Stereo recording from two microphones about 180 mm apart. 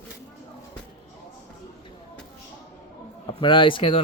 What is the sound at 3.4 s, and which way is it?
Speech, 25° left (ahead or behind).